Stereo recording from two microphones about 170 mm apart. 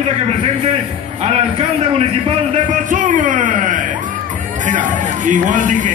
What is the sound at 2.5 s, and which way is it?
Speech, 50° right (ahead or behind).